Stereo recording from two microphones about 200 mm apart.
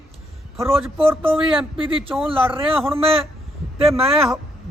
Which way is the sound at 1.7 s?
25° right (ahead or behind).